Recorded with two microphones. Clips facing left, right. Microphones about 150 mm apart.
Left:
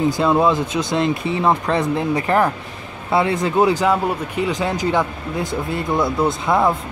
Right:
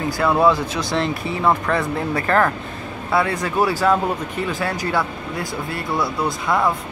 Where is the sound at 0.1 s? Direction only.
20° left (ahead or behind).